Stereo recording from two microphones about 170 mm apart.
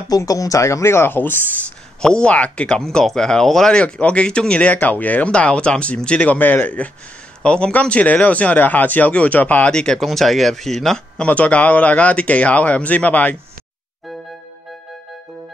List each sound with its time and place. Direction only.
0.1 s speech: 20° left (ahead or behind)